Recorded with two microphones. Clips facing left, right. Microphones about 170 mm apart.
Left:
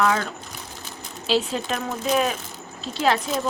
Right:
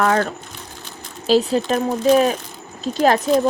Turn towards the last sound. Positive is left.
turn(degrees=-45)  # may be behind; listen again after turning